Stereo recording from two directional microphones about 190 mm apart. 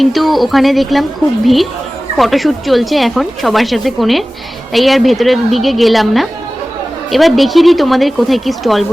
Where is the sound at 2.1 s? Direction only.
Centre (ahead or behind).